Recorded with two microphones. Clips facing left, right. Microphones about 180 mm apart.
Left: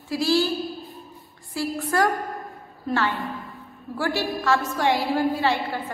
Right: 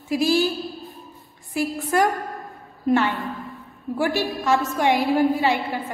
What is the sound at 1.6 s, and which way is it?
A woman's voice, 20° right (ahead or behind).